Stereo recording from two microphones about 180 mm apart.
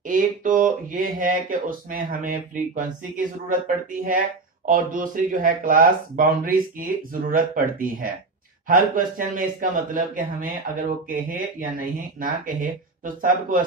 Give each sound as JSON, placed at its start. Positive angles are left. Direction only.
{"t": 0.0, "sound": "speech", "side_deg": -45}
{"t": 4.6, "sound": "a man's voice", "side_deg": -50}